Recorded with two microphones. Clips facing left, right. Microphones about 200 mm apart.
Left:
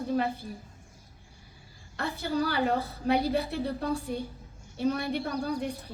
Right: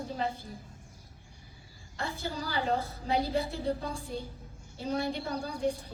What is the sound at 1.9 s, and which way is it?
A woman's voice, 65° left (ahead or behind).